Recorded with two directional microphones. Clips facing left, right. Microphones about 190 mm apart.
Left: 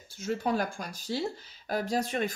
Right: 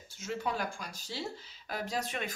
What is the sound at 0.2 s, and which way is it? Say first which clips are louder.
Speech: left 6 dB; 40° left (ahead or behind).